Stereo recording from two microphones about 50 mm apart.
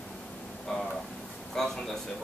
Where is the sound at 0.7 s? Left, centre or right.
Centre.